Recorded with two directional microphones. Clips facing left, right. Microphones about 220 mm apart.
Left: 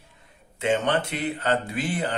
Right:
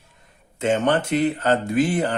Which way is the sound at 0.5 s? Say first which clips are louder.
Right 3 dB; 45° right (ahead or behind).